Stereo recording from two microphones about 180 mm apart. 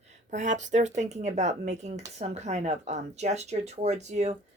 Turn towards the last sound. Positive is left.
turn(degrees=-40)  # may be behind; listen again after turning